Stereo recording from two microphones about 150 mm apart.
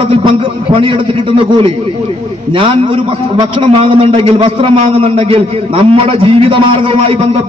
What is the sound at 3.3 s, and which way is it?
A man's voice, 35° right (ahead or behind).